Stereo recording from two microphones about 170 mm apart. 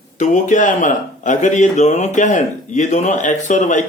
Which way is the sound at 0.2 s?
45° left (ahead or behind).